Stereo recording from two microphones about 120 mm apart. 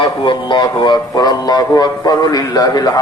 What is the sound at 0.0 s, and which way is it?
A man's voice, 40° left (ahead or behind).